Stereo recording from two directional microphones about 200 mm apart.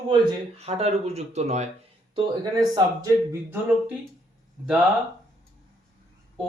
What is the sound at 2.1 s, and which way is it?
Speech, 20° right (ahead or behind).